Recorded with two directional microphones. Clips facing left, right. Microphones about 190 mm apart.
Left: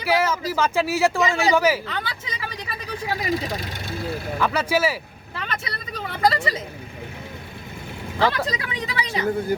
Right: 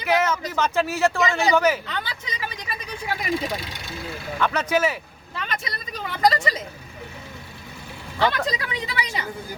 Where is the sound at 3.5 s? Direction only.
45° left (ahead or behind).